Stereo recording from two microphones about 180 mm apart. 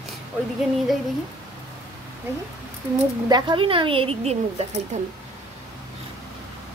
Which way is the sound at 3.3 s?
25° right (ahead or behind).